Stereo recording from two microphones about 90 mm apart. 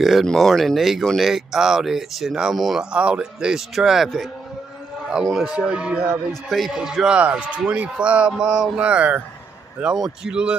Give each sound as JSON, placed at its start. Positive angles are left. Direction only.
{"t": 0.0, "sound": "a man's voice", "side_deg": 0}